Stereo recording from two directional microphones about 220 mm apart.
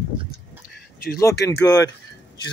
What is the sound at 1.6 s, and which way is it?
Speech, 15° left (ahead or behind).